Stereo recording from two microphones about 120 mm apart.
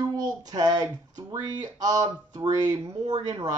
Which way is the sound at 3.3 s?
25° right (ahead or behind).